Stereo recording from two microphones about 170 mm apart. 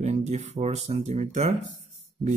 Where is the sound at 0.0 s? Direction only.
40° right (ahead or behind).